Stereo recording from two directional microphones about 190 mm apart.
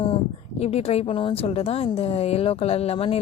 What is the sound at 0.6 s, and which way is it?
A woman's voice, 30° left (ahead or behind).